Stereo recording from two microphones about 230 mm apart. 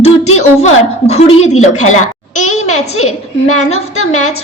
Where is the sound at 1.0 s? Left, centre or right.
Left.